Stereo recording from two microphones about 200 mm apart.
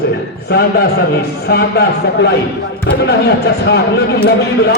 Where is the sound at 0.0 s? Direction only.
55° left (ahead or behind).